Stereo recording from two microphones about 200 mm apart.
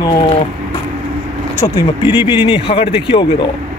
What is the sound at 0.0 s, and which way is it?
Speech, 30° left (ahead or behind).